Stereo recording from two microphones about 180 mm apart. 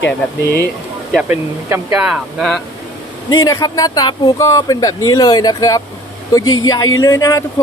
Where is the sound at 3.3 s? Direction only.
20° left (ahead or behind).